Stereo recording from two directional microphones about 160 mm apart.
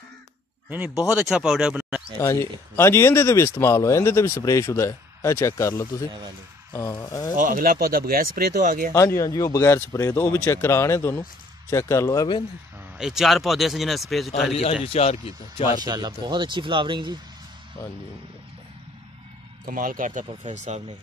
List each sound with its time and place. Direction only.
0.7 s speech: 10° right (ahead or behind)
2.1 s speech: 20° left (ahead or behind)
7.3 s speech: 55° right (ahead or behind)
8.9 s speech: 20° left (ahead or behind)
12.9 s speech: 5° right (ahead or behind)
14.5 s a man's voice: 40° left (ahead or behind)
15.8 s speech: 25° right (ahead or behind)
19.6 s speech: 60° right (ahead or behind)